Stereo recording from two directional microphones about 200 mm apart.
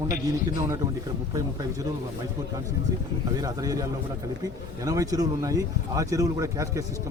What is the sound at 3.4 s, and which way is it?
Speech, 15° right (ahead or behind).